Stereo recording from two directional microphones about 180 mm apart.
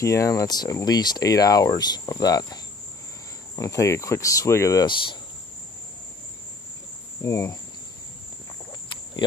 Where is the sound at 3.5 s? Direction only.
20° left (ahead or behind).